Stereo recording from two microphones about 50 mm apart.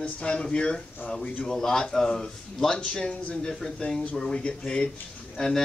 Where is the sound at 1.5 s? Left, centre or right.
Centre.